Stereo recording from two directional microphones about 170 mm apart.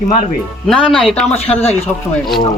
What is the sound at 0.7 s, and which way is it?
Speech, 5° left (ahead or behind).